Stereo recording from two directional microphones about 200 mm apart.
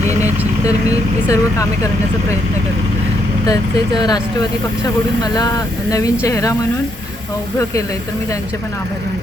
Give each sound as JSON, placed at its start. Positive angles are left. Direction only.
{"t": 0.9, "sound": "speech", "side_deg": 15}
{"t": 3.4, "sound": "speech", "side_deg": 20}
{"t": 5.9, "sound": "speech", "side_deg": 15}